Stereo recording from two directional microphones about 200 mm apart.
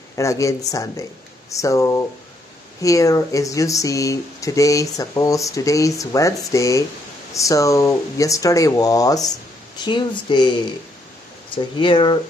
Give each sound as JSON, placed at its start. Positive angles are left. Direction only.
{"t": 0.1, "sound": "speech", "side_deg": 15}
{"t": 11.5, "sound": "speech", "side_deg": 25}